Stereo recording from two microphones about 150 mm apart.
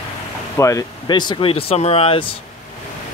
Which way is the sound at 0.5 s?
20° left (ahead or behind).